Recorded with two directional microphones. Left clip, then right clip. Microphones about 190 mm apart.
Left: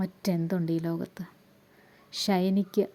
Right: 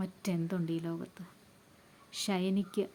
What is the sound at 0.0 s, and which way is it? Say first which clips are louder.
Speech: left 6 dB; 20° left (ahead or behind).